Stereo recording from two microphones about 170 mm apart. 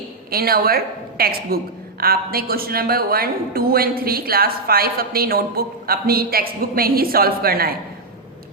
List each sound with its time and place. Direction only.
0.3 s a woman's voice: 60° right (ahead or behind)